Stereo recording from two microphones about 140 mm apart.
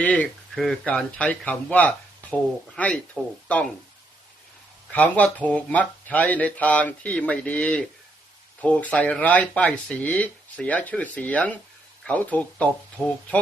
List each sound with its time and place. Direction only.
0.0 s speech: 10° left (ahead or behind)
4.9 s speech: 10° left (ahead or behind)